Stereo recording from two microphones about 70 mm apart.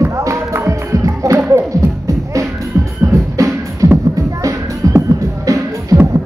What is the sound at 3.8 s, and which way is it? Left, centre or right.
Music, right.